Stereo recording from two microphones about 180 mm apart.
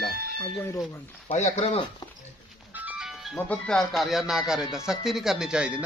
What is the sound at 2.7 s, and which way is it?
Speech, 10° right (ahead or behind).